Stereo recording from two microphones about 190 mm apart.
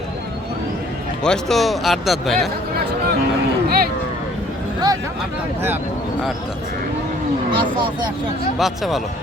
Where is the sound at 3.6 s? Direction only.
55° right (ahead or behind).